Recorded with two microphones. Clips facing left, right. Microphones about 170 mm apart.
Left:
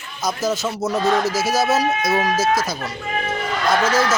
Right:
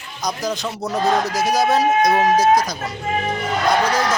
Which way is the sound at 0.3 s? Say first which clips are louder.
Left 2 dB; 5° left (ahead or behind).